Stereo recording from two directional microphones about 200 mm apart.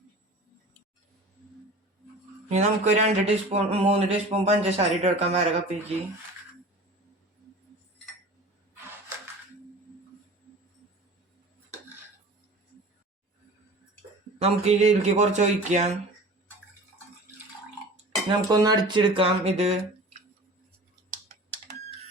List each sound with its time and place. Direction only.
2.5 s a man's voice: 35° right (ahead or behind)
14.4 s a man's voice: 35° right (ahead or behind)
17.9 s speech: 20° right (ahead or behind)
21.1 s computer keyboard: 35° right (ahead or behind)